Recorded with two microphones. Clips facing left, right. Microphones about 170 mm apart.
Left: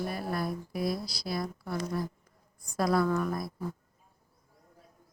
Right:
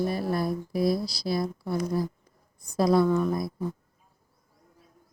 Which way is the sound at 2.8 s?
25° right (ahead or behind).